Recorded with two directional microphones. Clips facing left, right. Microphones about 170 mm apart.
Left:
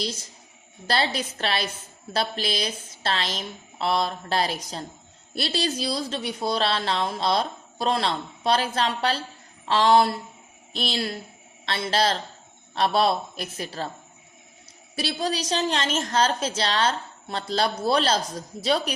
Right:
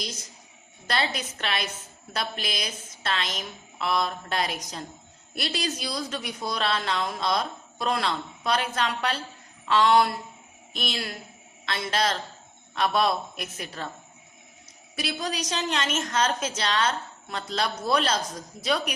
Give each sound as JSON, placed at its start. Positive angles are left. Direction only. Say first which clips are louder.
{"t": 0.9, "sound": "a woman's voice", "louder": "left 3 dB", "side_deg": 30}
{"t": 14.9, "sound": "a woman's voice", "louder": "left 3 dB", "side_deg": 30}